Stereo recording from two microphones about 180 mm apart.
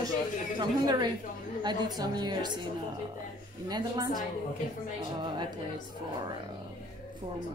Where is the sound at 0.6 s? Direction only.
25° right (ahead or behind).